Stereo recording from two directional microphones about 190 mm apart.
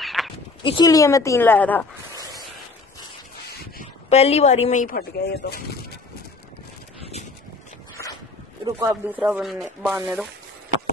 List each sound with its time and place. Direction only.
0.0 s a sound: centre (ahead or behind)
0.6 s speech: 25° left (ahead or behind)
4.1 s a woman's voice: 35° left (ahead or behind)
4.8 s speech: 55° left (ahead or behind)
7.0 s vehicle: 35° left (ahead or behind)
8.7 s speech: 10° right (ahead or behind)
9.9 s speech: 15° right (ahead or behind)